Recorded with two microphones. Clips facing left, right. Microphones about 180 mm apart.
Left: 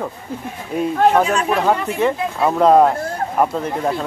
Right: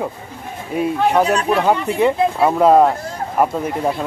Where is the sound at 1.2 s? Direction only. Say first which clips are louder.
Right 2 dB; 35° right (ahead or behind).